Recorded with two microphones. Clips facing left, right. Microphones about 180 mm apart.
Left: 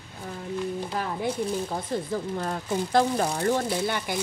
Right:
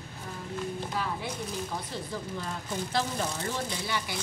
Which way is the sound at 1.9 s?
50° left (ahead or behind).